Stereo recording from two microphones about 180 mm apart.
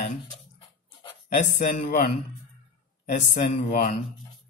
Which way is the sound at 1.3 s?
45° left (ahead or behind).